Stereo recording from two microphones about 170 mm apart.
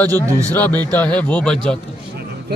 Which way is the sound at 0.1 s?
20° right (ahead or behind).